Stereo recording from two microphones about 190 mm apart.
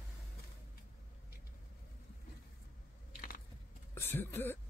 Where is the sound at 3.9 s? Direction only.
10° left (ahead or behind).